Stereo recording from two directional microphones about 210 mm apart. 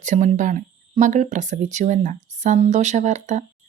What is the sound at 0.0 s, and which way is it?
Speech, 35° right (ahead or behind).